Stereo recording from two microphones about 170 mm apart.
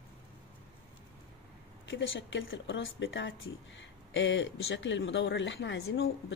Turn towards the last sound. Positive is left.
turn(degrees=90)